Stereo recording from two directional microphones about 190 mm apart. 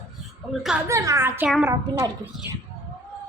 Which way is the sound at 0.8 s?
15° right (ahead or behind).